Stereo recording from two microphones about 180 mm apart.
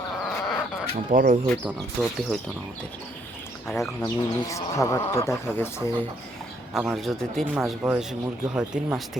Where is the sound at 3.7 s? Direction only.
15° left (ahead or behind).